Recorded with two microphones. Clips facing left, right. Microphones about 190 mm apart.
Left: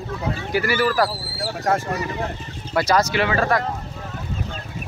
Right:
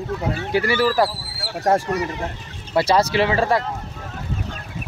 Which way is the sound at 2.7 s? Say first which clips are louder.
Right 2 dB; 30° right (ahead or behind).